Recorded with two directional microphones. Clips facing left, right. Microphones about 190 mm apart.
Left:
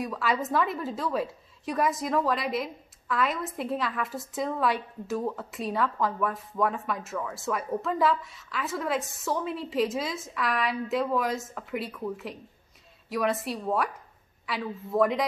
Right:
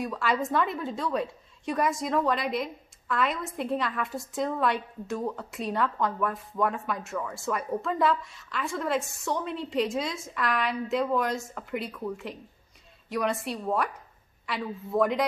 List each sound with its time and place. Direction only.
0.0 s a woman's voice: centre (ahead or behind)